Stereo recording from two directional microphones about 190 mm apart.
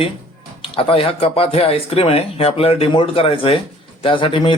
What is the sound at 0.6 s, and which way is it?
A man's voice, 30° left (ahead or behind).